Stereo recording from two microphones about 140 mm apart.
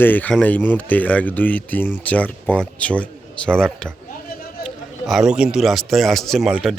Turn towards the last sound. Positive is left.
turn(degrees=-5)  # may be behind; listen again after turning